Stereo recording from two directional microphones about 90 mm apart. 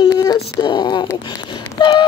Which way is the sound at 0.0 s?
45° left (ahead or behind).